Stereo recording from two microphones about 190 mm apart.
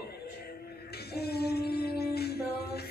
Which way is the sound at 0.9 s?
55° left (ahead or behind).